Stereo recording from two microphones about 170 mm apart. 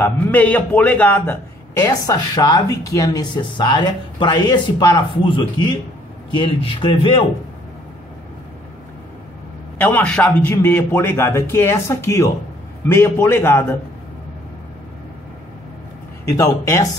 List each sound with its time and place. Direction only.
0.0 s a man's voice: 10° left (ahead or behind); by 7.1 s 30° left (ahead or behind)
9.8 s a man's voice: 10° left (ahead or behind)
16.3 s a man's voice: 15° left (ahead or behind)